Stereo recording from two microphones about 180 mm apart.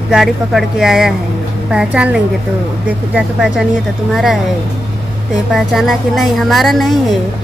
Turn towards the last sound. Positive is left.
turn(degrees=0)  # may be behind; listen again after turning